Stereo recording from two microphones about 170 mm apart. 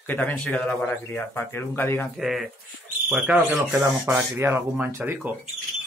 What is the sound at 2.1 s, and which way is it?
Speech, centre (ahead or behind).